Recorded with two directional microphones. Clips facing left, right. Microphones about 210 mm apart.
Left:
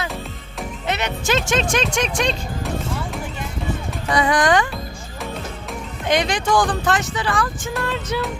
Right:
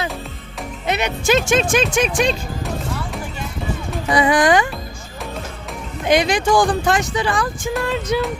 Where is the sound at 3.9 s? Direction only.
10° right (ahead or behind).